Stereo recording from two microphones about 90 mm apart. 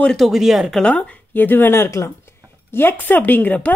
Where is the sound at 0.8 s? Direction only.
15° left (ahead or behind).